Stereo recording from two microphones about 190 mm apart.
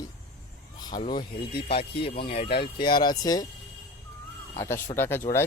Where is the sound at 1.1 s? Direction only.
55° left (ahead or behind).